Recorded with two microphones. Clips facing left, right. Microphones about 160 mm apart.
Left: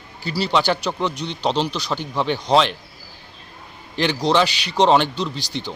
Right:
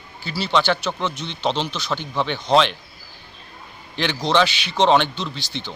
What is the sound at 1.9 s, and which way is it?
Speech, 5° left (ahead or behind).